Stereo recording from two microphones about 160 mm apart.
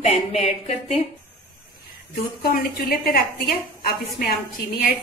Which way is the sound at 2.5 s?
65° left (ahead or behind).